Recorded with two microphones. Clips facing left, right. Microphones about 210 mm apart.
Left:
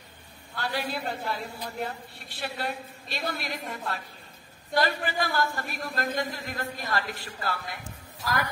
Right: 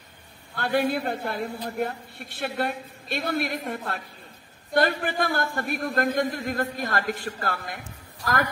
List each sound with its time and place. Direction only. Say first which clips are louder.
0.6 s a man's voice: right 7 dB; 50° right (ahead or behind)